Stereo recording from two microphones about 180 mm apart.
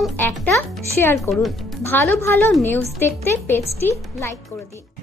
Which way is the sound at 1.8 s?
10° left (ahead or behind).